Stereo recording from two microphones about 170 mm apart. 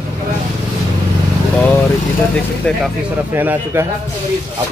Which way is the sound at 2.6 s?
5° left (ahead or behind).